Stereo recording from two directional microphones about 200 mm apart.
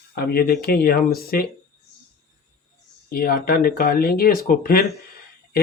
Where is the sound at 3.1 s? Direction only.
45° left (ahead or behind).